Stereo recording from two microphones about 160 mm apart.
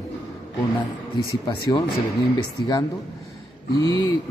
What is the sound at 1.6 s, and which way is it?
Speech, 25° left (ahead or behind).